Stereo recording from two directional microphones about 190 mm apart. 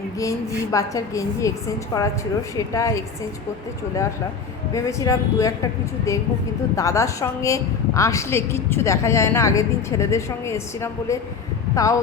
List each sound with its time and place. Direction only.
0.2 s a woman's voice: 15° left (ahead or behind)
4.7 s a woman's voice: 15° left (ahead or behind)
6.7 s a woman's voice: 15° left (ahead or behind)